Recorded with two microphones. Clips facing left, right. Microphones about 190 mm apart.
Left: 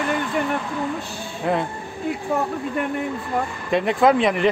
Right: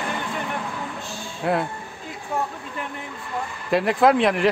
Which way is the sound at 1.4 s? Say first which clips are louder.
Left 1 dB; centre (ahead or behind).